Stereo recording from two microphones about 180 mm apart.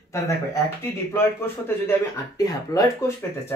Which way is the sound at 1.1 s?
10° left (ahead or behind).